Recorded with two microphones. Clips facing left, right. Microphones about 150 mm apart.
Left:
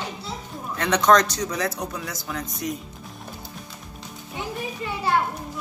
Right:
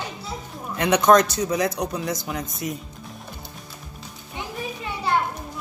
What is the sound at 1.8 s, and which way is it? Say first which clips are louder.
Speech: right 5 dB; 20° right (ahead or behind).